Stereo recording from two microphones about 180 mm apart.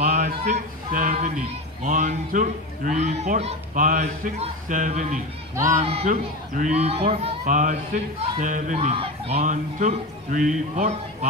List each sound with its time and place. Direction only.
0.0 s a sound: 40° right (ahead or behind)
1.8 s speech: 45° right (ahead or behind)
7.4 s speech: 45° right (ahead or behind)
8.7 s speech: 30° right (ahead or behind)